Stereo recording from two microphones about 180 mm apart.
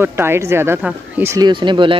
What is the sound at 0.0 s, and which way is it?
Speech, 15° right (ahead or behind).